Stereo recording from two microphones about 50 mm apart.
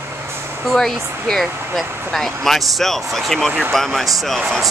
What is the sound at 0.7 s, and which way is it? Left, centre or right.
Speech, centre.